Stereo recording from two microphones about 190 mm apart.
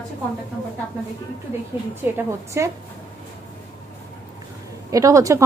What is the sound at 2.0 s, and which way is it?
Speech, 15° right (ahead or behind).